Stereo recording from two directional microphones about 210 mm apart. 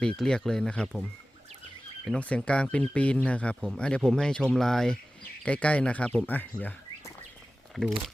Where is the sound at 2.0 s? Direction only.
5° left (ahead or behind).